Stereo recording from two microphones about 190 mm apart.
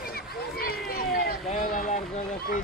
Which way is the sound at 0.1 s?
50° left (ahead or behind).